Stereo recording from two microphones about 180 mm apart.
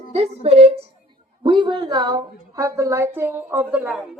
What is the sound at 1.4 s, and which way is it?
A woman's voice, 25° right (ahead or behind).